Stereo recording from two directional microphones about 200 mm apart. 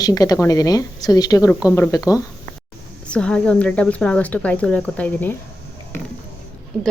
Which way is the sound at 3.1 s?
5° left (ahead or behind).